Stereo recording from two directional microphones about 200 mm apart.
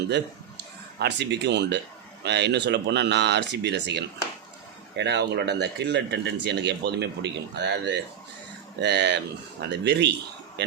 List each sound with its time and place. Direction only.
0.1 s speech: 55° right (ahead or behind)